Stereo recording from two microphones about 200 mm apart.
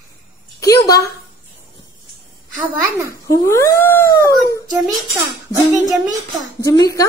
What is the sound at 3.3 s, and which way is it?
Cat, 15° left (ahead or behind).